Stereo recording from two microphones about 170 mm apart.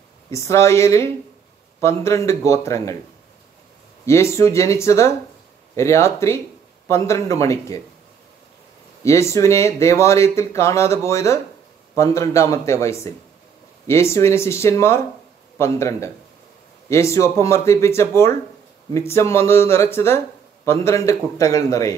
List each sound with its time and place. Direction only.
0.3 s speech: 15° left (ahead or behind)
4.0 s speech: 15° left (ahead or behind)
9.0 s a man's voice: 15° left (ahead or behind)